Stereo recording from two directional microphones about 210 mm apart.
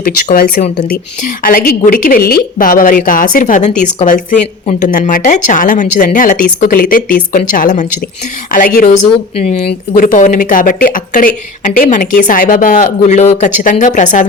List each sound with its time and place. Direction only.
1.4 s a woman's voice: 45° left (ahead or behind)